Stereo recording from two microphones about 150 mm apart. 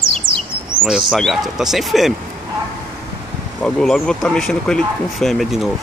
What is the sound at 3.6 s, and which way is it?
Speech, 5° left (ahead or behind).